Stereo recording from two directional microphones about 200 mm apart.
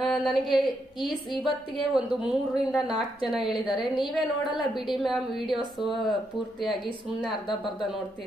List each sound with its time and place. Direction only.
0.0 s a woman's voice: centre (ahead or behind)
1.3 s a woman's voice: 25° left (ahead or behind)
2.0 s a woman's voice: 5° right (ahead or behind)
4.0 s a woman's voice: 25° left (ahead or behind)
4.7 s a woman's voice: centre (ahead or behind)
6.6 s a woman's voice: centre (ahead or behind)